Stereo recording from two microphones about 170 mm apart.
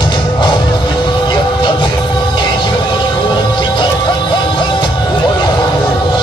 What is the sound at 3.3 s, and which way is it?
Music, 25° left (ahead or behind).